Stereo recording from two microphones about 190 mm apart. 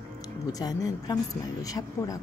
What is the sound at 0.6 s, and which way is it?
Speech, 20° left (ahead or behind).